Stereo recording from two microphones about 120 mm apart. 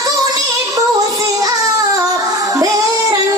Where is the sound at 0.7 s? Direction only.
30° right (ahead or behind).